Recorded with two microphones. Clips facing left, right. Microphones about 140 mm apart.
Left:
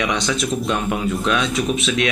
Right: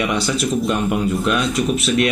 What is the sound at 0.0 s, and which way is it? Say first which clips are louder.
Speech: right 1 dB; 5° right (ahead or behind).